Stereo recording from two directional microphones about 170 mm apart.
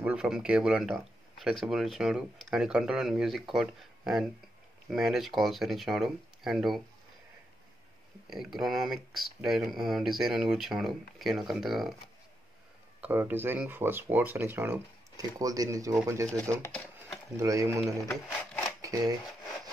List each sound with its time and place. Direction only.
0.0 s speech: 5° right (ahead or behind)
8.3 s speech: centre (ahead or behind)
13.0 s speech: 10° right (ahead or behind)
18.8 s shuffling cards: 20° right (ahead or behind)